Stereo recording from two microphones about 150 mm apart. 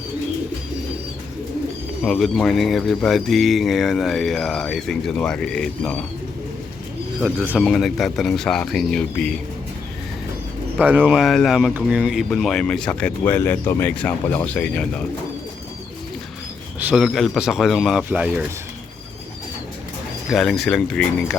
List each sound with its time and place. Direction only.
2.0 s speech: centre (ahead or behind)
7.5 s speech: 5° left (ahead or behind)
10.8 s speech: 10° right (ahead or behind)
12.3 s speech: 5° left (ahead or behind)
16.8 s speech: centre (ahead or behind)
20.3 s speech: centre (ahead or behind)